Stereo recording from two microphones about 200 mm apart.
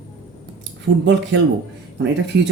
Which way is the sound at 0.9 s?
60° right (ahead or behind).